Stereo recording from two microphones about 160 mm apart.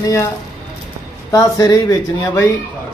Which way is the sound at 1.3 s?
20° left (ahead or behind).